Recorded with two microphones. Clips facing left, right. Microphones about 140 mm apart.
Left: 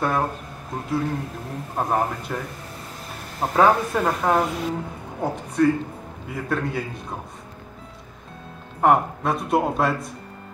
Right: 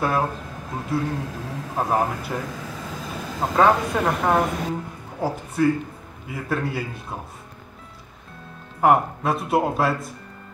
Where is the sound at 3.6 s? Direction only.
Centre (ahead or behind).